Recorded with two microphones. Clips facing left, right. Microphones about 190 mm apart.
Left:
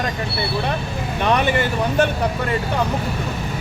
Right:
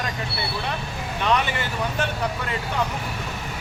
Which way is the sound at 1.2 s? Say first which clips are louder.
Left 5 dB; 55° left (ahead or behind).